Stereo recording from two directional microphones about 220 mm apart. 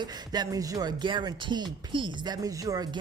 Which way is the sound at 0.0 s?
20° right (ahead or behind).